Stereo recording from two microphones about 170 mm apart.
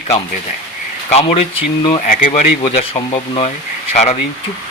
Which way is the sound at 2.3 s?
35° left (ahead or behind).